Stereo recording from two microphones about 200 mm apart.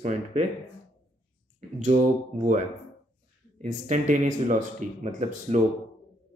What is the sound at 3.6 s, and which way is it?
Speech, 40° right (ahead or behind).